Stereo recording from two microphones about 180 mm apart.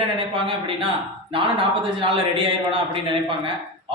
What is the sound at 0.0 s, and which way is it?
A man's voice, 30° right (ahead or behind).